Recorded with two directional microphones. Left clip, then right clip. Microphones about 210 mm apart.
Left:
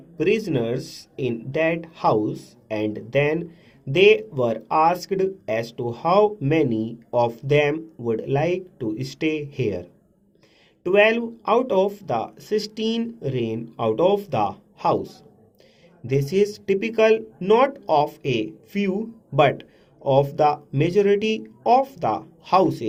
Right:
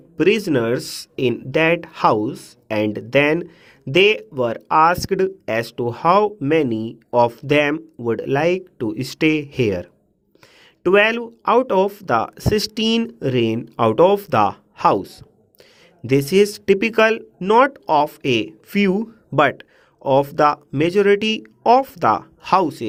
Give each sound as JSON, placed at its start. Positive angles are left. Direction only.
{"t": 0.2, "sound": "speech", "side_deg": -50}